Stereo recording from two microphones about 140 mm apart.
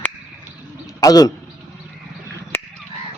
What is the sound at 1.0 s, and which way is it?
Speech, 25° left (ahead or behind).